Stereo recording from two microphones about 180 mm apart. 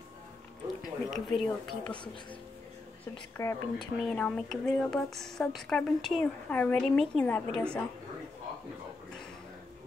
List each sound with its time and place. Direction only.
1.1 s a woman's voice: centre (ahead or behind)
3.3 s speech: 20° left (ahead or behind)
4.0 s a woman's voice: 5° left (ahead or behind)